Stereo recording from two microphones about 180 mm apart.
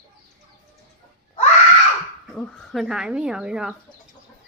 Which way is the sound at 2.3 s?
5° left (ahead or behind).